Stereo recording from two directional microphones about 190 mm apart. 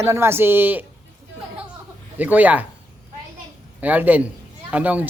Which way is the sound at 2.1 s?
10° right (ahead or behind).